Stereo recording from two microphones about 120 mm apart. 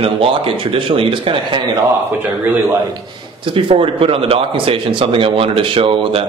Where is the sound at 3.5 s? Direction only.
50° right (ahead or behind).